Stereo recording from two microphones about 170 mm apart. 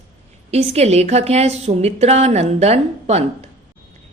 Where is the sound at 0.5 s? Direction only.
40° right (ahead or behind).